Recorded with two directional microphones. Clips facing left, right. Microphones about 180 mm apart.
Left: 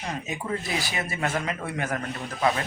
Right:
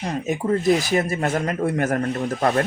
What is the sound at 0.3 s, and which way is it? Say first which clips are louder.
Speech: right 14 dB; 45° right (ahead or behind).